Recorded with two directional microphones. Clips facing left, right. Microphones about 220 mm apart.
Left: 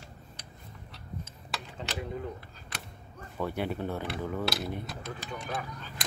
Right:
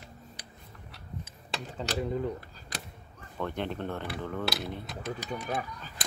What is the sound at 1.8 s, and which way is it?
Speech, 40° right (ahead or behind).